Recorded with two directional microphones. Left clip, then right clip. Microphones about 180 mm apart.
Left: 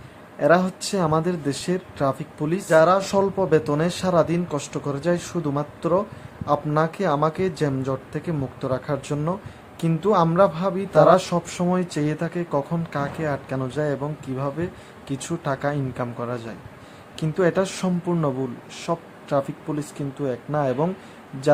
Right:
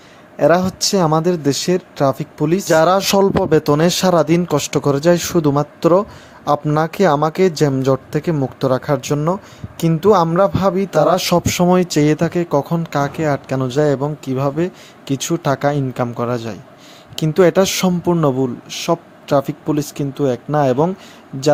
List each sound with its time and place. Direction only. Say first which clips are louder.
0.3 s speech: right 5 dB; 35° right (ahead or behind)
2.6 s speech: right 3 dB; 45° right (ahead or behind)